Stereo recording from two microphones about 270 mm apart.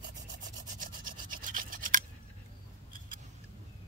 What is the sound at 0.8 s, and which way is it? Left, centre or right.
Rub, right.